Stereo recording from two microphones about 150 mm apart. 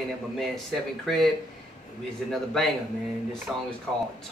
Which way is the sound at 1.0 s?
Centre (ahead or behind).